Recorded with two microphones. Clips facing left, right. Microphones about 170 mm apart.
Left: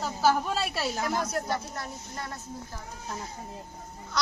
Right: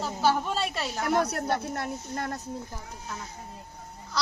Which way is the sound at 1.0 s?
65° right (ahead or behind).